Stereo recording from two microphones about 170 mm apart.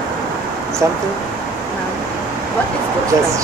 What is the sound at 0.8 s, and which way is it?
Speech, 15° right (ahead or behind).